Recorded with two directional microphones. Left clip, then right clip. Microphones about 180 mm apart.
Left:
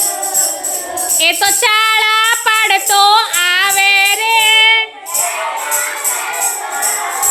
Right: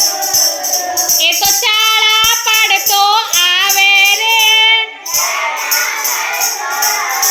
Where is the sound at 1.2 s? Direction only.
45° left (ahead or behind).